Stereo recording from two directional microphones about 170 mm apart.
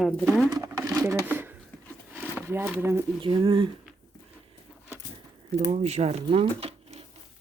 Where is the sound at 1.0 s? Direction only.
10° right (ahead or behind).